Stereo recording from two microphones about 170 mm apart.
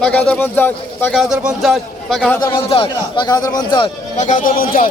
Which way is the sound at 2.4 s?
30° left (ahead or behind).